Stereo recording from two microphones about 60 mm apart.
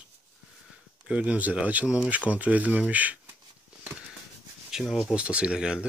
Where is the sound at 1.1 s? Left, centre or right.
Right.